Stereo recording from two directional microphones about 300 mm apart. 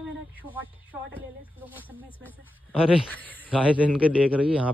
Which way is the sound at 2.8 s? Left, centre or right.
Centre.